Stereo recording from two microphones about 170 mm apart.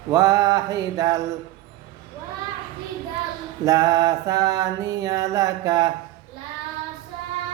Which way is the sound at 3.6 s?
20° right (ahead or behind).